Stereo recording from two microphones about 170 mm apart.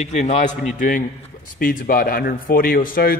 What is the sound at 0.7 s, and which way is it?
A man's voice, 55° left (ahead or behind).